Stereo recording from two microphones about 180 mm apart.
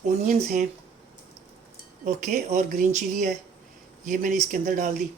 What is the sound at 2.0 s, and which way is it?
Speech, 45° right (ahead or behind).